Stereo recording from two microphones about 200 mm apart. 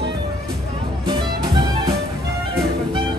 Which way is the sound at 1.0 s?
20° right (ahead or behind).